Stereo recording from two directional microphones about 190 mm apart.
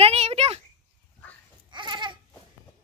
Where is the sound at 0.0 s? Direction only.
35° right (ahead or behind).